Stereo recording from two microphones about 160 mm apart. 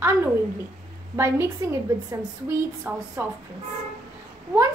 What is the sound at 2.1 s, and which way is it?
A child's voice, 15° right (ahead or behind).